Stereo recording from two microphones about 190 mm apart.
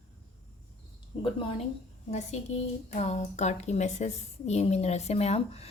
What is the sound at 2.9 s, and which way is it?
A woman's voice, 35° left (ahead or behind).